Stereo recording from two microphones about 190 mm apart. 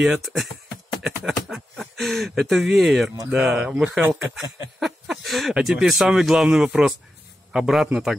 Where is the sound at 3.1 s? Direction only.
20° right (ahead or behind).